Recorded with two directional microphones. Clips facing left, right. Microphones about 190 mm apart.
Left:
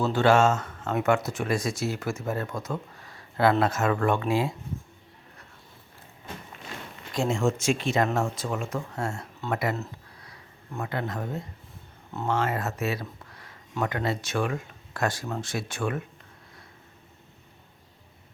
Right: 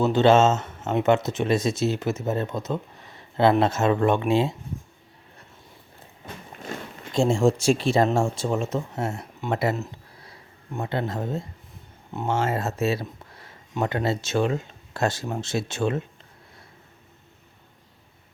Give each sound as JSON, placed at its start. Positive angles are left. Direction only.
{"t": 0.0, "sound": "speech", "side_deg": -20}
{"t": 6.7, "sound": "a sound", "side_deg": -45}
{"t": 7.1, "sound": "speech", "side_deg": -30}